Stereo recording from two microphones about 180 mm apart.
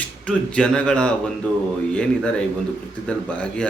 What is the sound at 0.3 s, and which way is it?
A man's voice, 5° left (ahead or behind).